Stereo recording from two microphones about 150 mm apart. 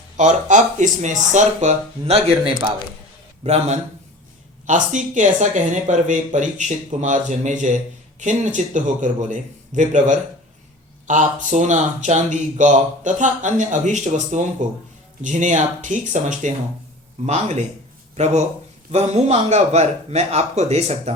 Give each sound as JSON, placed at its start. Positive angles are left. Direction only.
{"t": 0.2, "sound": "speech", "side_deg": -55}
{"t": 18.9, "sound": "speech", "side_deg": -45}